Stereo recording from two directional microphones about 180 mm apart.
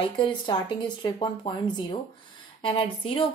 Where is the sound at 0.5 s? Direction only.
25° left (ahead or behind).